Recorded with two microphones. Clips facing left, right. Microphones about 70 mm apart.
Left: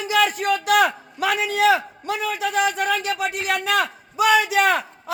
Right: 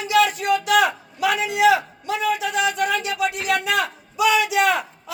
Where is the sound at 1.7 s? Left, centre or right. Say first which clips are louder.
Right 1 dB; left.